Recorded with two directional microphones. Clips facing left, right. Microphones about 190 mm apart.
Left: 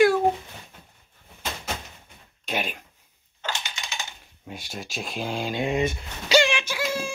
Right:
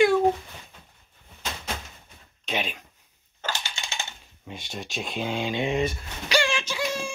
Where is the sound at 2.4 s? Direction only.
5° left (ahead or behind).